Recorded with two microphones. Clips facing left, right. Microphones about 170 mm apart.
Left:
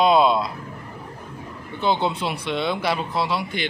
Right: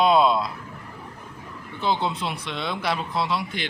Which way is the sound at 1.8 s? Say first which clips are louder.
Left 3 dB; centre (ahead or behind).